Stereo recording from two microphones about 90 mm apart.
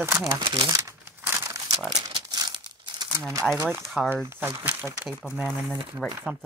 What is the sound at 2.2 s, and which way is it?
Crumpling, 45° right (ahead or behind).